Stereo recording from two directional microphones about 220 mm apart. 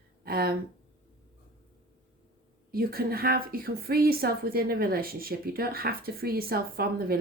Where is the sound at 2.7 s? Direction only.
45° right (ahead or behind).